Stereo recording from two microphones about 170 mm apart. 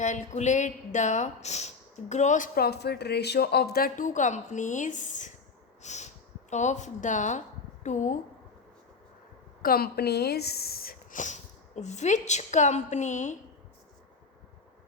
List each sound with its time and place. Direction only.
0.0 s speech: 45° left (ahead or behind)
2.6 s speech: 75° left (ahead or behind); by 8.2 s 45° left (ahead or behind)
9.6 s speech: 60° left (ahead or behind); by 13.3 s 45° left (ahead or behind)